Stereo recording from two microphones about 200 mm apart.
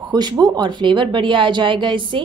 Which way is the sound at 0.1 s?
20° right (ahead or behind).